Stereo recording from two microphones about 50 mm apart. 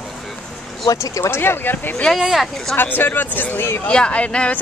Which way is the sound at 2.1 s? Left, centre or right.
Centre.